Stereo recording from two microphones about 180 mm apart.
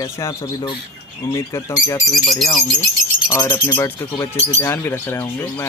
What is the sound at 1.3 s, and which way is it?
Speech, 20° left (ahead or behind).